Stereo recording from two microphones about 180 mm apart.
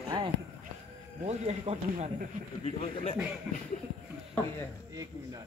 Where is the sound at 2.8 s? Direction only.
35° left (ahead or behind).